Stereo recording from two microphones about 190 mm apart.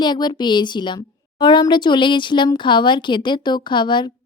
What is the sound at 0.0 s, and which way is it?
A woman's voice, 20° left (ahead or behind).